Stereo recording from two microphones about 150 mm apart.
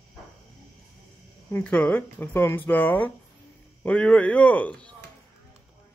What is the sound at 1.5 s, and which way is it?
Speech, 10° left (ahead or behind).